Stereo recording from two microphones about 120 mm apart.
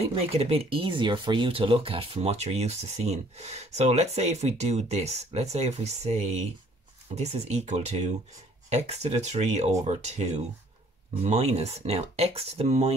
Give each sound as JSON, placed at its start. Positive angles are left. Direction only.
{"t": 0.1, "sound": "speech", "side_deg": -55}